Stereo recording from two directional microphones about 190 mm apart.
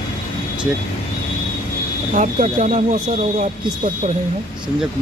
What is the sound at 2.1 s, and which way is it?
Speech, 40° right (ahead or behind).